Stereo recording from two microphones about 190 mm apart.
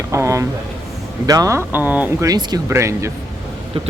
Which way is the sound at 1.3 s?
15° right (ahead or behind).